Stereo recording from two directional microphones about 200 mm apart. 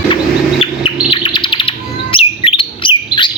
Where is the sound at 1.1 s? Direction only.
25° left (ahead or behind).